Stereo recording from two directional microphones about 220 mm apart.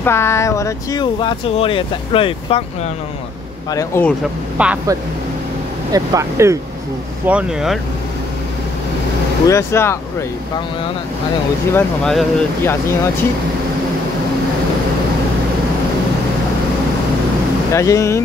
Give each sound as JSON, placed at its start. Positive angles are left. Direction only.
{"t": 0.0, "sound": "speech", "side_deg": 10}
{"t": 3.7, "sound": "speech", "side_deg": 10}
{"t": 4.6, "sound": "speech", "side_deg": -5}
{"t": 9.5, "sound": "speech", "side_deg": 10}
{"t": 11.7, "sound": "speech", "side_deg": 5}
{"t": 17.7, "sound": "speech", "side_deg": 15}